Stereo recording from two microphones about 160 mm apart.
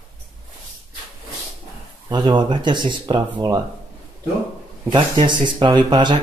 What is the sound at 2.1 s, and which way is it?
Speech, 25° right (ahead or behind).